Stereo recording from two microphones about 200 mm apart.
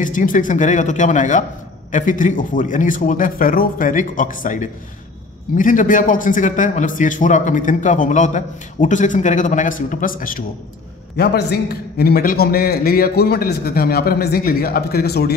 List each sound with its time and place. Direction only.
0.0 s a man's voice: 40° left (ahead or behind)
11.1 s a man's voice: 55° left (ahead or behind)